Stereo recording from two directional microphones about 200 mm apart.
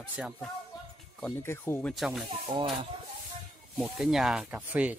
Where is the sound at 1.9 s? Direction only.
Centre (ahead or behind).